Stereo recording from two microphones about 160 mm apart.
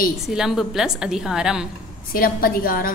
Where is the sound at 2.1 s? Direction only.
65° left (ahead or behind).